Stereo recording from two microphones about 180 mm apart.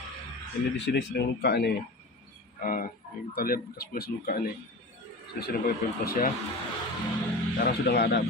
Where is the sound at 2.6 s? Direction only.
50° left (ahead or behind).